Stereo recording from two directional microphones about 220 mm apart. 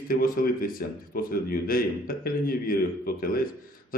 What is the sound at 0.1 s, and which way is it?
A man's voice, 40° left (ahead or behind).